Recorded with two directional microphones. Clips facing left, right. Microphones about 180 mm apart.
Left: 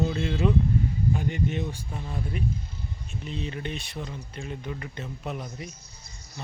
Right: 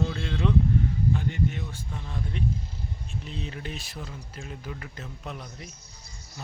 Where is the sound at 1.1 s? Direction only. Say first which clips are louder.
Left 2 dB; 15° left (ahead or behind).